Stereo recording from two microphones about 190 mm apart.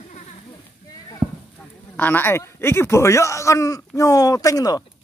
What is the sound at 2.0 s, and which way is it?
Speech, 10° left (ahead or behind).